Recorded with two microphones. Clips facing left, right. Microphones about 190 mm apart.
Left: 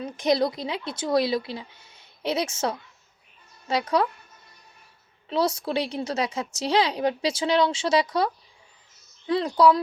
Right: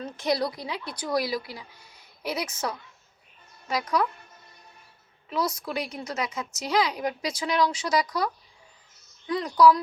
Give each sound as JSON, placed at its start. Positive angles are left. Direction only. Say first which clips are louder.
{"t": 0.0, "sound": "a woman's voice", "louder": "left 4 dB", "side_deg": 20}
{"t": 5.3, "sound": "a woman's voice", "louder": "left 4 dB", "side_deg": 30}